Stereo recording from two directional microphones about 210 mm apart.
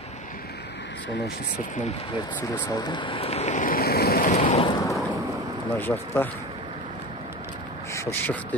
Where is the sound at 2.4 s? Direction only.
15° left (ahead or behind).